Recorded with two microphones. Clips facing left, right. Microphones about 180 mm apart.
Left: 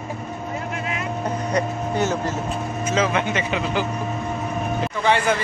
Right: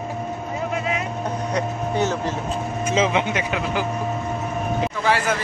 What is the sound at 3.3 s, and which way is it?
Speech, 5° right (ahead or behind).